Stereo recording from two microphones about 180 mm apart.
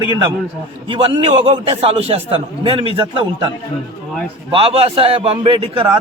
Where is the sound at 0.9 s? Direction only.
30° right (ahead or behind).